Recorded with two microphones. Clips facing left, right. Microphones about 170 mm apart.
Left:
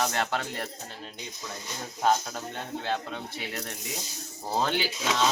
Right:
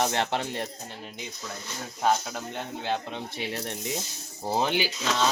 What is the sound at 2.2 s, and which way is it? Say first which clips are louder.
Speech: right 2 dB; 15° right (ahead or behind).